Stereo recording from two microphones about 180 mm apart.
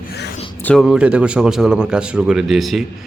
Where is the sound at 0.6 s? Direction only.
Centre (ahead or behind).